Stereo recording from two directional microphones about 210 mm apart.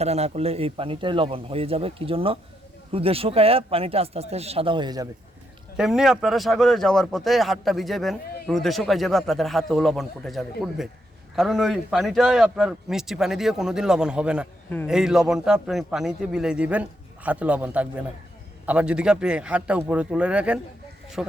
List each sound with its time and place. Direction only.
0.0 s speech: 30° right (ahead or behind)
5.7 s a man's voice: 5° right (ahead or behind)